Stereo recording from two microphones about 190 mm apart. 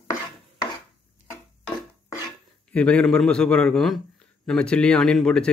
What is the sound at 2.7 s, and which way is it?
A man's voice, 5° left (ahead or behind).